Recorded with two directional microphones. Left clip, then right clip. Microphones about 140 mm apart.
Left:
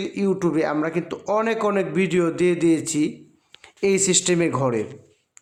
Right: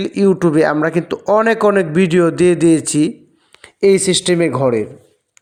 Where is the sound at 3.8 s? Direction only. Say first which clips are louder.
Right 8 dB; 30° right (ahead or behind).